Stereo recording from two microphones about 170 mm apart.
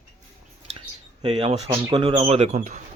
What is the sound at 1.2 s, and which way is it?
Speech, 35° right (ahead or behind).